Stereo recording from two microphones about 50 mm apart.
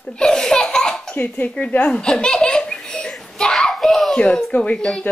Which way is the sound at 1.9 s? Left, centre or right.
Centre.